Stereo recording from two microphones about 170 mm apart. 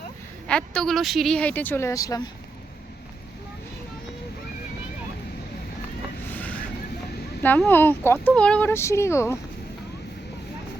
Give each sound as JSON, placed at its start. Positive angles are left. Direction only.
{"t": 0.4, "sound": "speech", "side_deg": 5}
{"t": 6.2, "sound": "vehicle", "side_deg": 10}
{"t": 7.4, "sound": "speech", "side_deg": 10}